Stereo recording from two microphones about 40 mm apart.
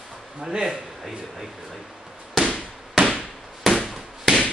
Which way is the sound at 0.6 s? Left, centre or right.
Centre.